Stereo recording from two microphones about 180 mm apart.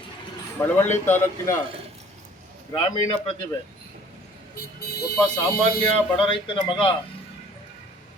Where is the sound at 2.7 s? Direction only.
25° left (ahead or behind).